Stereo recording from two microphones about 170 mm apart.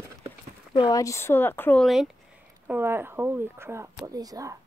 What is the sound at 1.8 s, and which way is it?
Speech, centre (ahead or behind).